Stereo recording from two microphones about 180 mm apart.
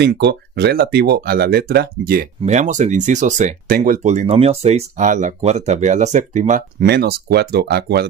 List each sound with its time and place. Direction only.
0.0 s speech: 70° right (ahead or behind)
2.4 s speech: 40° right (ahead or behind)
6.9 s speech: 60° right (ahead or behind)